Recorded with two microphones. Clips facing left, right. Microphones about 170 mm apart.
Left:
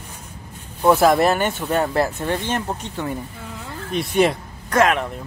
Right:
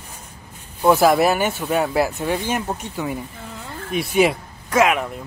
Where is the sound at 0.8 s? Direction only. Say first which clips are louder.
Even; 5° right (ahead or behind).